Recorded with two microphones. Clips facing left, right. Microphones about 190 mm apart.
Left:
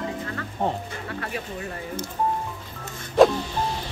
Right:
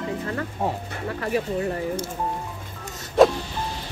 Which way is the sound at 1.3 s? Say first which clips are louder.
Right 8 dB; 30° right (ahead or behind).